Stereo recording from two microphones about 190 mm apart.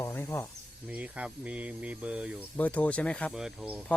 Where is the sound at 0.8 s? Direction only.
5° right (ahead or behind).